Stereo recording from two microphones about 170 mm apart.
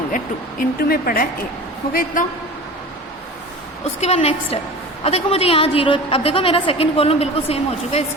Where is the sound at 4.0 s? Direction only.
40° left (ahead or behind).